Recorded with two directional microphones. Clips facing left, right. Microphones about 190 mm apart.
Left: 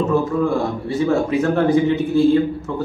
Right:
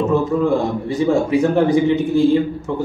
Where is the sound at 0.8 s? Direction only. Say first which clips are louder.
Even; 15° right (ahead or behind).